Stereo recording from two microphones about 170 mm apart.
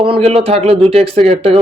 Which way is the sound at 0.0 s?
35° right (ahead or behind).